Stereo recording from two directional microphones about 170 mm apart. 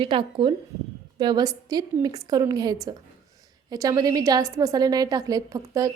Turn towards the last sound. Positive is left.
turn(degrees=-20)  # may be behind; listen again after turning